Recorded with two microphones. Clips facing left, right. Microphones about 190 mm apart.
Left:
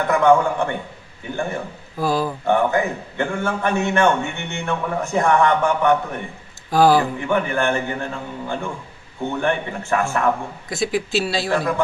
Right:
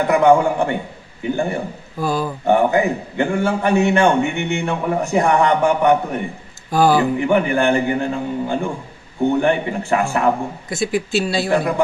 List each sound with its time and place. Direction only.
0.0 s a man's voice: 15° right (ahead or behind)
2.0 s speech: centre (ahead or behind)
2.4 s a man's voice: 15° right (ahead or behind)
6.7 s speech: centre (ahead or behind)
7.2 s a man's voice: 15° right (ahead or behind)
10.7 s speech: centre (ahead or behind)
11.5 s a man's voice: 20° right (ahead or behind)